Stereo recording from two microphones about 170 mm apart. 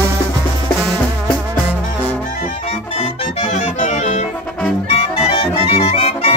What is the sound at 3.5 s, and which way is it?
Music, 45° left (ahead or behind).